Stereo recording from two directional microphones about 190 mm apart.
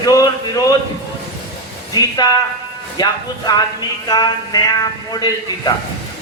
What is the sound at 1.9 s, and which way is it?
A man's voice, 20° left (ahead or behind).